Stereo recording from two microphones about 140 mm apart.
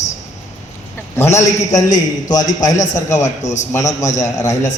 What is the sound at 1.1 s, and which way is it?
Speech, 20° left (ahead or behind).